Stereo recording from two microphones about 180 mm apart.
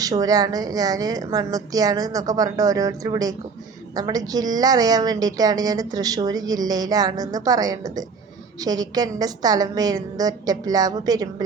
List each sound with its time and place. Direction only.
0.0 s a woman's voice: 20° right (ahead or behind)